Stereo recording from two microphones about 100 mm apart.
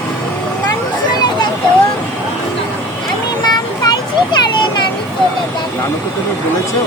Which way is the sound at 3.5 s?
40° left (ahead or behind).